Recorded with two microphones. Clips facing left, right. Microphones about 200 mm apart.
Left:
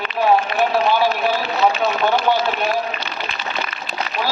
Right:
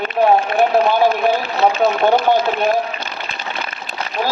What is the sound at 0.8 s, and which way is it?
Run, 50° right (ahead or behind).